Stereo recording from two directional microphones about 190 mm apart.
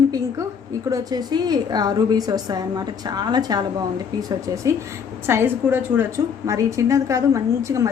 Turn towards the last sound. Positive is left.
turn(degrees=-15)  # may be behind; listen again after turning